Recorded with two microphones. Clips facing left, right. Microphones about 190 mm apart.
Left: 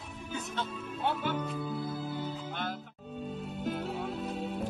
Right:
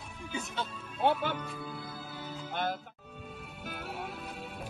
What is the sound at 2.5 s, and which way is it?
Music, 50° right (ahead or behind).